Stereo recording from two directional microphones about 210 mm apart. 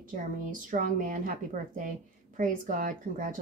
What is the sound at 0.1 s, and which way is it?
A woman's voice, 40° right (ahead or behind).